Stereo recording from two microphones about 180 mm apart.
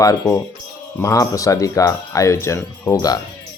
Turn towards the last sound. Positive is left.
turn(degrees=20)  # may be behind; listen again after turning